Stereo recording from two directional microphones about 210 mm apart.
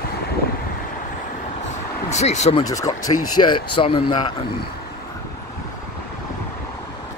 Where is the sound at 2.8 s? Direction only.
15° left (ahead or behind).